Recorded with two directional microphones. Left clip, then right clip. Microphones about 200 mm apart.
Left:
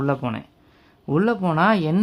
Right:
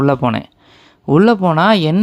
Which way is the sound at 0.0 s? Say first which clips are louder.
Right 10 dB; 35° right (ahead or behind).